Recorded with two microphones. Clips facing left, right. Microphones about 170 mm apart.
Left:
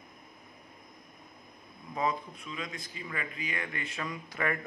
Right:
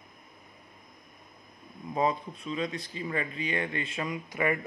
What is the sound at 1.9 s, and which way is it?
Speech, 30° right (ahead or behind).